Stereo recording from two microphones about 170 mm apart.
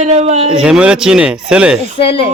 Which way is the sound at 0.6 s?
5° right (ahead or behind).